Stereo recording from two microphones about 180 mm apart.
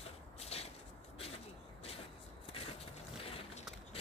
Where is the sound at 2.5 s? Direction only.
35° left (ahead or behind).